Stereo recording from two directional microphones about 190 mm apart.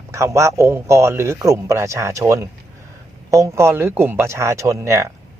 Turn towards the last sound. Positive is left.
turn(degrees=-15)  # may be behind; listen again after turning